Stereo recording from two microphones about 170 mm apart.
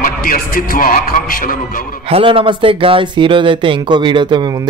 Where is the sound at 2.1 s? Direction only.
30° right (ahead or behind).